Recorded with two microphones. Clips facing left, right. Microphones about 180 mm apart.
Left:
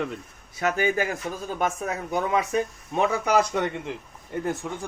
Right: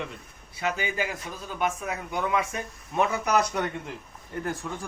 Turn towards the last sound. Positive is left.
turn(degrees=20)  # may be behind; listen again after turning